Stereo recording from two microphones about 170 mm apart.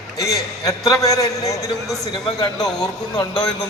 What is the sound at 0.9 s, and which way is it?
A man's voice, 20° left (ahead or behind).